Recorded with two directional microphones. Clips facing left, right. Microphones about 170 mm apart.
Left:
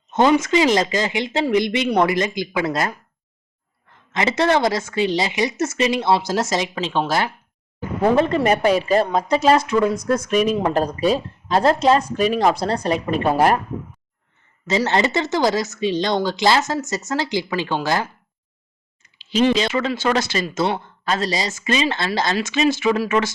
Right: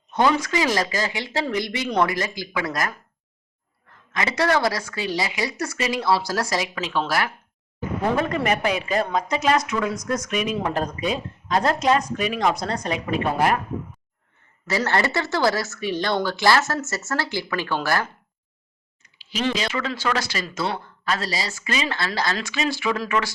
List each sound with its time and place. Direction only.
0.1 s speech: 20° left (ahead or behind)
4.1 s speech: 25° left (ahead or behind)
14.7 s speech: 20° left (ahead or behind)